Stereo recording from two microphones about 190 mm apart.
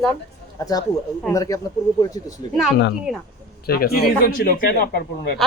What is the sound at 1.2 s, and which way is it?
Speech, 15° left (ahead or behind).